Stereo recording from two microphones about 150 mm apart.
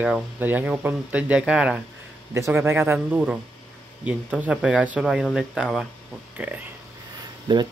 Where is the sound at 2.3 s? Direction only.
20° right (ahead or behind).